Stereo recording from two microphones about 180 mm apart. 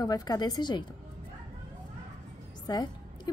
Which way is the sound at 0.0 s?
20° left (ahead or behind).